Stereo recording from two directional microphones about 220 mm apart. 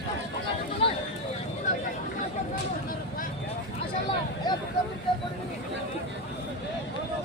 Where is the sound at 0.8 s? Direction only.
25° left (ahead or behind).